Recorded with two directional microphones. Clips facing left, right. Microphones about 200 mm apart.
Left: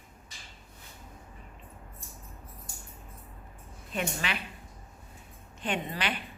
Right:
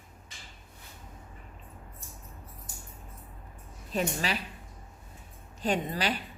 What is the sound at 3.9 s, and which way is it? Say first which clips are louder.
Speech: right 3 dB; 35° right (ahead or behind).